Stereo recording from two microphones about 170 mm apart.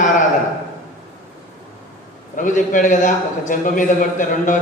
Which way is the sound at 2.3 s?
50° left (ahead or behind).